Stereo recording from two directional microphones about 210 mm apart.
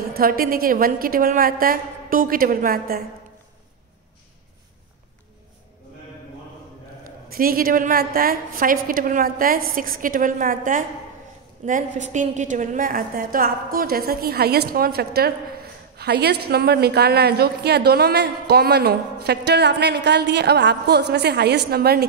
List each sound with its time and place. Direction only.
0.1 s a woman's voice: 45° right (ahead or behind)
7.3 s a woman's voice: 45° right (ahead or behind)